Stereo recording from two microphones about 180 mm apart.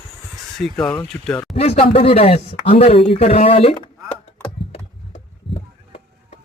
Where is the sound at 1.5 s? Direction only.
35° left (ahead or behind).